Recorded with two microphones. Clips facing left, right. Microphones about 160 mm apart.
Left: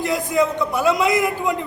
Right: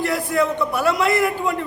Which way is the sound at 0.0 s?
20° left (ahead or behind).